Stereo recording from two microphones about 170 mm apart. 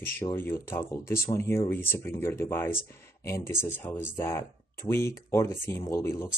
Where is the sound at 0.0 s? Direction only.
15° left (ahead or behind).